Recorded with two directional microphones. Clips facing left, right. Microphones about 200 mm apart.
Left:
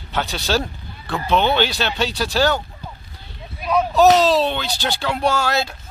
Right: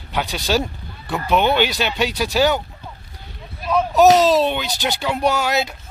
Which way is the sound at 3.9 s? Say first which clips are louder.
Right 1 dB; 15° right (ahead or behind).